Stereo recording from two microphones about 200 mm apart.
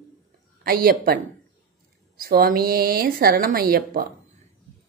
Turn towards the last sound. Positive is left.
turn(degrees=-45)  # may be behind; listen again after turning